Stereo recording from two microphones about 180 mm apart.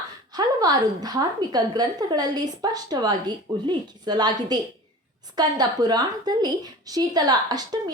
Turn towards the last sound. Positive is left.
turn(degrees=-20)  # may be behind; listen again after turning